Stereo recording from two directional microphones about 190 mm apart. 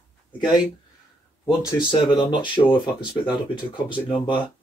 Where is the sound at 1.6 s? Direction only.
20° left (ahead or behind).